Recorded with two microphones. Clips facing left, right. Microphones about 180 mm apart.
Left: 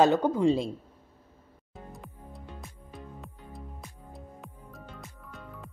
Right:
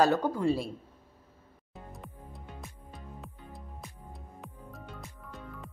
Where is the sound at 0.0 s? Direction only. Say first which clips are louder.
Left 3 dB; 20° left (ahead or behind).